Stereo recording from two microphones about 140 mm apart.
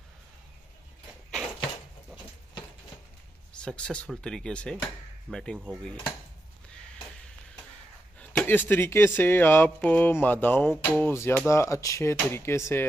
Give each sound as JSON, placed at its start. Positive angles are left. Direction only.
{"t": 3.6, "sound": "speech", "side_deg": 5}
{"t": 8.2, "sound": "speech", "side_deg": 10}